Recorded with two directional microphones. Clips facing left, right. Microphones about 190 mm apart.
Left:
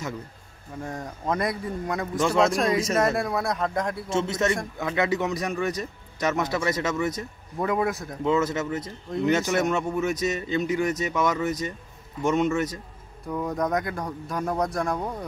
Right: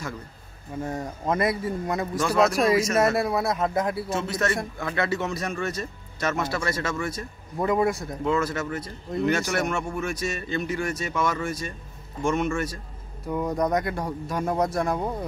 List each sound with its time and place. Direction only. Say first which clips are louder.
0.8 s speech: right 1 dB; centre (ahead or behind)
2.1 s speech: left 1 dB; 25° left (ahead or behind)
2.5 s speech: right 2 dB; 5° right (ahead or behind)
4.1 s a man's voice: left 2 dB; 25° left (ahead or behind)
7.5 s speech: right 2 dB; centre (ahead or behind)
8.3 s speech: left 2 dB; 20° left (ahead or behind)
13.3 s speech: right 2 dB; centre (ahead or behind)